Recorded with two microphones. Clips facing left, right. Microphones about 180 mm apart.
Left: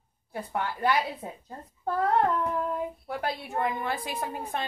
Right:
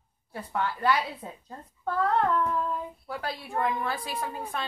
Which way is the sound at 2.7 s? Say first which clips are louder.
Left 2 dB; 25° left (ahead or behind).